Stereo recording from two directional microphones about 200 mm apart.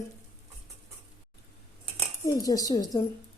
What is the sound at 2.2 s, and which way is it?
Speech, 15° left (ahead or behind).